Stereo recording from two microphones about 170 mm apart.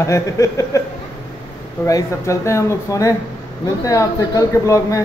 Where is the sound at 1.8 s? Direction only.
15° left (ahead or behind).